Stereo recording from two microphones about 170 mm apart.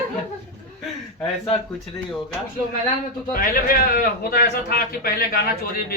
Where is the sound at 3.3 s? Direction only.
55° left (ahead or behind).